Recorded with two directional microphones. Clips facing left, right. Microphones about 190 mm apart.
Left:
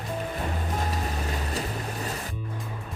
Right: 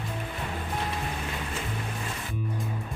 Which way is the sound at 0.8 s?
40° left (ahead or behind).